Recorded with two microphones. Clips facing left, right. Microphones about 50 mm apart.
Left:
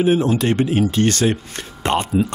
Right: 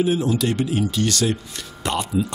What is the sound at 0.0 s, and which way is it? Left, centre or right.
Speech, left.